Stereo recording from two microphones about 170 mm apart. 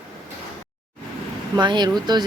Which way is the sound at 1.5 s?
25° right (ahead or behind).